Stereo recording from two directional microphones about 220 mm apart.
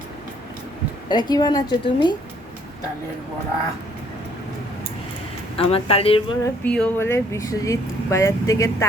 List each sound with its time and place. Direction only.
1.0 s a woman's voice: 20° left (ahead or behind)
5.5 s a woman's voice: 25° left (ahead or behind)
6.7 s speech: 10° left (ahead or behind)